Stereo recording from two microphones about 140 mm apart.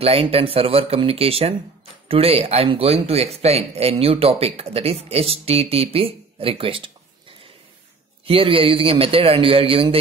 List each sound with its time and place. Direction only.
0.0 s speech: 45° right (ahead or behind)
8.3 s a man's voice: 40° right (ahead or behind)